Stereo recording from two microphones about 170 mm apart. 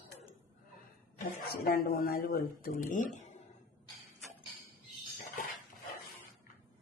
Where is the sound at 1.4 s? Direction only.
60° left (ahead or behind).